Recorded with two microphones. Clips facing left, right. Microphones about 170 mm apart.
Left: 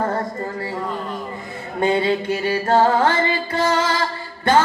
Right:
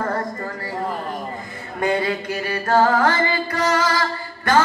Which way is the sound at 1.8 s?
25° left (ahead or behind).